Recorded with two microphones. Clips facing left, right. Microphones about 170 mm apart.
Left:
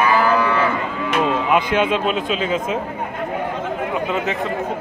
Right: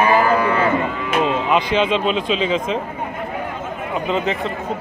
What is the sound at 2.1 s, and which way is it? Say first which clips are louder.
Speech: right 2 dB; 50° left (ahead or behind).